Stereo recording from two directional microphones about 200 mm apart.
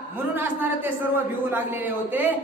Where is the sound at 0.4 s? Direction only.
10° right (ahead or behind).